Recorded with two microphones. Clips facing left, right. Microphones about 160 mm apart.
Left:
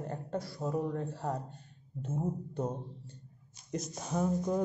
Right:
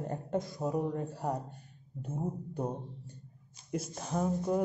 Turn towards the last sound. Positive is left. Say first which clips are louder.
# even
turn(degrees=-5)  # may be behind; listen again after turning